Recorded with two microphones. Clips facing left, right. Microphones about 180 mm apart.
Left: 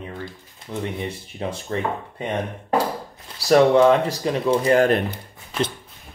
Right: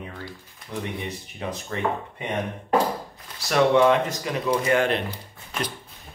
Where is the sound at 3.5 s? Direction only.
35° left (ahead or behind).